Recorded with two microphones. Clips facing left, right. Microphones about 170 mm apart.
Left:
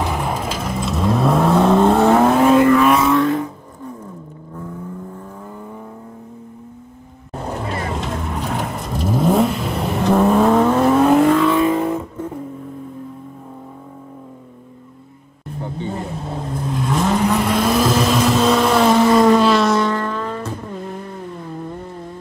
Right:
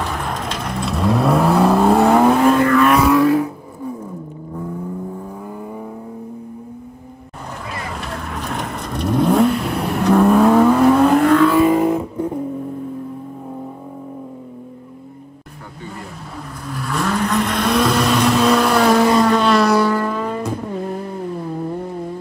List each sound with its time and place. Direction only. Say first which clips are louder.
0.0 s vehicle: left 2 dB; 10° left (ahead or behind); by 3.9 s 5° right (ahead or behind)
7.4 s vehicle: left 6 dB; 35° left (ahead or behind)
8.0 s vehicle: left 3 dB; 20° left (ahead or behind); by 12.3 s 10° right (ahead or behind)
15.8 s vehicle: left 5 dB; 25° left (ahead or behind)
17.4 s vehicle: left 1 dB; 5° left (ahead or behind); by 20.5 s 10° right (ahead or behind)